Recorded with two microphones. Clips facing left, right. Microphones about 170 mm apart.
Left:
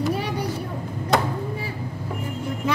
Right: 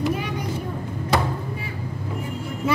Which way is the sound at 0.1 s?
35° left (ahead or behind).